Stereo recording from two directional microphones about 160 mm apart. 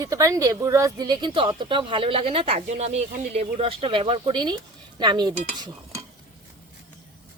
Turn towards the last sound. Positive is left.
turn(degrees=-25)  # may be behind; listen again after turning